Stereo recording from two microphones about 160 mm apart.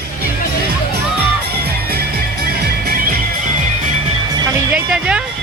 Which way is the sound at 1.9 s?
75° right (ahead or behind).